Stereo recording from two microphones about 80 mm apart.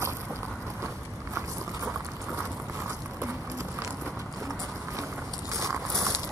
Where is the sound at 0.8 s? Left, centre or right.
Right.